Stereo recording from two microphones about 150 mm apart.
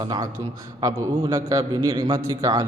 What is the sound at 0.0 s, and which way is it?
A man's voice, 30° right (ahead or behind).